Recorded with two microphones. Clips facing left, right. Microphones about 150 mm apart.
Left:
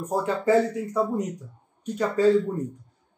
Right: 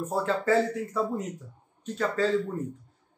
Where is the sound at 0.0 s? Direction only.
15° left (ahead or behind).